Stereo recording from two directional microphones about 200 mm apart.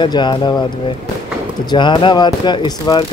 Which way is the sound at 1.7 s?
25° left (ahead or behind).